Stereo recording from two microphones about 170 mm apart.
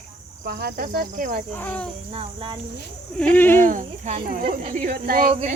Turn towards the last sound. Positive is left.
turn(degrees=-55)  # may be behind; listen again after turning